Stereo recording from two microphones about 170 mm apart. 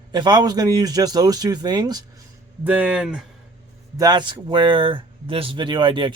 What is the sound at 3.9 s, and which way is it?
Speech, 25° right (ahead or behind).